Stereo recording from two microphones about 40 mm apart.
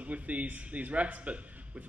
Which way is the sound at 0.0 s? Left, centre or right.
Right.